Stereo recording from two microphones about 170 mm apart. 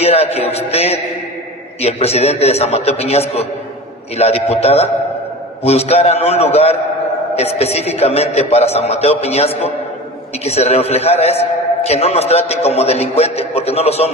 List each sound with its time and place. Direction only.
0.0 s a man's voice: 35° left (ahead or behind)